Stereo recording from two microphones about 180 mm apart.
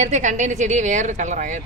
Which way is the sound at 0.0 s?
40° right (ahead or behind).